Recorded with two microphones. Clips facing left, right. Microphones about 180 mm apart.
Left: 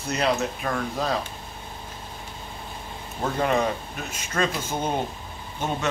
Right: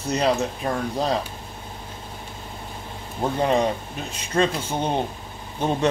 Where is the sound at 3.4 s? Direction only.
30° right (ahead or behind).